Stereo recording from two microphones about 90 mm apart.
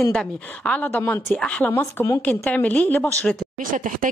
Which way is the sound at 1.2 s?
10° left (ahead or behind).